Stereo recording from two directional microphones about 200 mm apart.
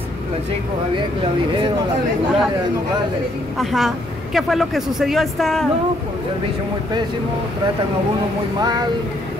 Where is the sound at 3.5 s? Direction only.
Centre (ahead or behind).